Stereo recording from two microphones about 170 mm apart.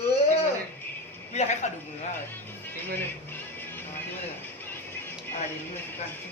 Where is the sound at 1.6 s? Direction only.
45° left (ahead or behind).